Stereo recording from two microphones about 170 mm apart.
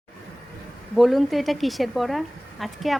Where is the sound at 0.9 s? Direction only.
Centre (ahead or behind).